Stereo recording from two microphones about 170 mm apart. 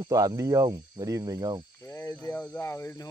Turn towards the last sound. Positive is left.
turn(degrees=15)  # may be behind; listen again after turning